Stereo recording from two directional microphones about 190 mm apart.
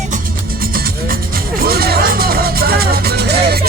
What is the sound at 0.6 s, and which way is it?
Music, 50° right (ahead or behind).